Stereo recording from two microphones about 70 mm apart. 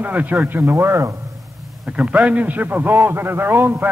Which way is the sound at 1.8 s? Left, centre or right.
Centre.